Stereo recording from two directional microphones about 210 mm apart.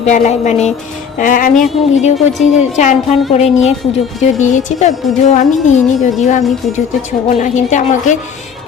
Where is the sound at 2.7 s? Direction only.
35° left (ahead or behind).